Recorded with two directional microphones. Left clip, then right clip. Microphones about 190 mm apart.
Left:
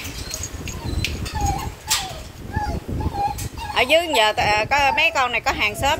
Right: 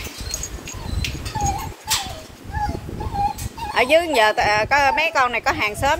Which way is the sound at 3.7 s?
15° right (ahead or behind).